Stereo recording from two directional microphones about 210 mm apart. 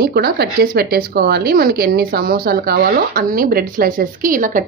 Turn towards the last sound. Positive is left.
turn(degrees=-40)  # may be behind; listen again after turning